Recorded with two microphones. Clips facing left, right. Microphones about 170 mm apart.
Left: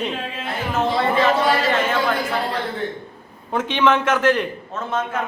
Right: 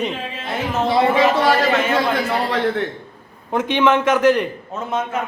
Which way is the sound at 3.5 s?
15° right (ahead or behind).